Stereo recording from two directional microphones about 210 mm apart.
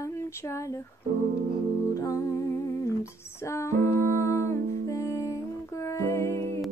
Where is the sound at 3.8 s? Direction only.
35° right (ahead or behind).